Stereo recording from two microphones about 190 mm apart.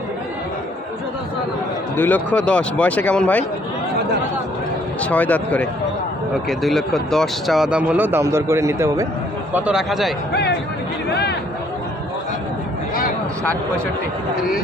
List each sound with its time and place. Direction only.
2.0 s speech: 10° left (ahead or behind)
4.9 s speech: 5° left (ahead or behind); by 9.0 s 15° right (ahead or behind)
9.6 s a man's voice: 5° right (ahead or behind)
11.1 s a sound: 60° left (ahead or behind)